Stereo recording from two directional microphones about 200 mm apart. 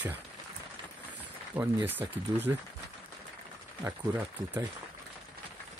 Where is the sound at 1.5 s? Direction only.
10° right (ahead or behind).